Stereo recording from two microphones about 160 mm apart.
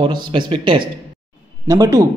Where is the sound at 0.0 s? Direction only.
30° right (ahead or behind).